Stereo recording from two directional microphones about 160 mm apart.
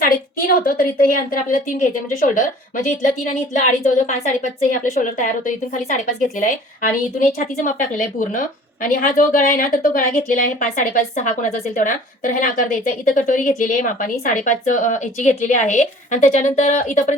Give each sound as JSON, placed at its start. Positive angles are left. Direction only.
{"t": 0.4, "sound": "a woman's voice", "side_deg": 70}